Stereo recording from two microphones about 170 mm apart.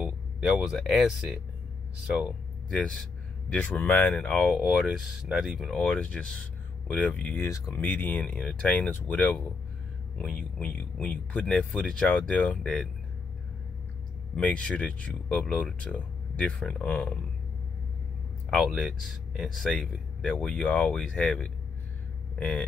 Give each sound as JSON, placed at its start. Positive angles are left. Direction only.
{"t": 0.0, "sound": "speech", "side_deg": -5}
{"t": 7.4, "sound": "speech", "side_deg": 20}
{"t": 14.3, "sound": "speech", "side_deg": 5}
{"t": 18.5, "sound": "speech", "side_deg": 0}